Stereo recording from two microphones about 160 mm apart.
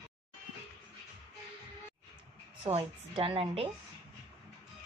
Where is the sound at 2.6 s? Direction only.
35° right (ahead or behind).